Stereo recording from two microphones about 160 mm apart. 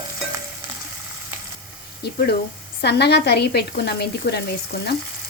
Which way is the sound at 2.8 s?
90° left.